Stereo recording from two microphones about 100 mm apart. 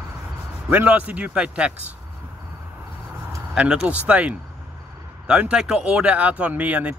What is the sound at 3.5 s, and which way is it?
Speech, 10° right (ahead or behind).